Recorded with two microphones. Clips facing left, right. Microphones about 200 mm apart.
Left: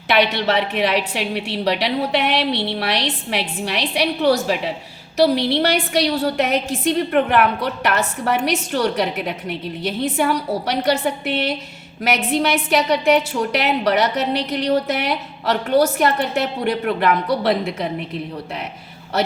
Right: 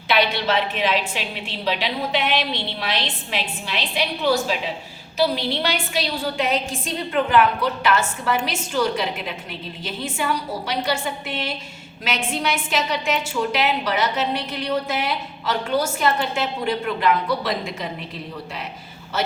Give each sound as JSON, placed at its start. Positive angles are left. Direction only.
{"t": 0.1, "sound": "a woman's voice", "side_deg": 70}